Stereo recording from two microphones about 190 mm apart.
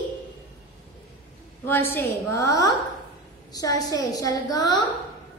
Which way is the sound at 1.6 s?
10° left (ahead or behind).